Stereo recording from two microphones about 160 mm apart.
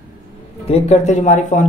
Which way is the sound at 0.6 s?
40° left (ahead or behind).